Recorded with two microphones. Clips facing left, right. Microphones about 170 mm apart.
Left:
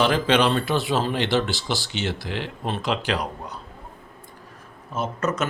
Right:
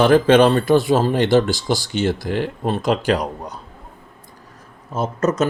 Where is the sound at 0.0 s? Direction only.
50° right (ahead or behind).